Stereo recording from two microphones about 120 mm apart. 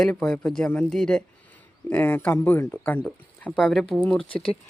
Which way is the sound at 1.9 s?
15° left (ahead or behind).